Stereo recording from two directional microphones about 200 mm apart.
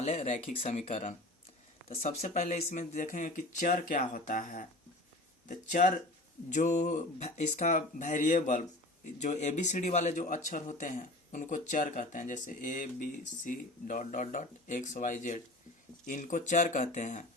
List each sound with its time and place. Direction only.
0.0 s speech: 35° left (ahead or behind)